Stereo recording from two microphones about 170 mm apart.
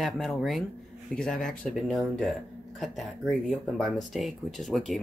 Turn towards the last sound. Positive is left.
turn(degrees=0)  # may be behind; listen again after turning